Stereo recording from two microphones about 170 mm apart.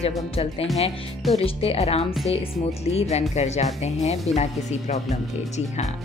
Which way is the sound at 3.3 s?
40° left (ahead or behind).